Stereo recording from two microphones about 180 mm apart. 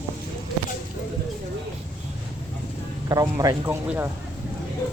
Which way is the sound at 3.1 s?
20° right (ahead or behind).